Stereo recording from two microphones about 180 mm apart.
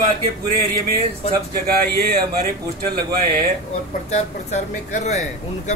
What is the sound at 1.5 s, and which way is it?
Speech, 60° right (ahead or behind).